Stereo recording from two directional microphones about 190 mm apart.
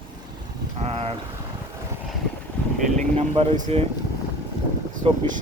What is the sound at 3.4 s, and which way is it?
Speech, 30° right (ahead or behind).